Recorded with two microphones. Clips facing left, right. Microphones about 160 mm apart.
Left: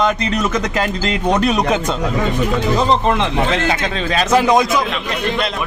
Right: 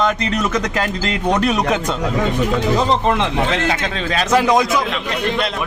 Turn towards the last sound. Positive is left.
turn(degrees=20)  # may be behind; listen again after turning